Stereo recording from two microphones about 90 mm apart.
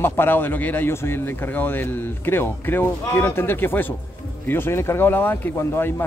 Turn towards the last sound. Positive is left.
turn(degrees=25)  # may be behind; listen again after turning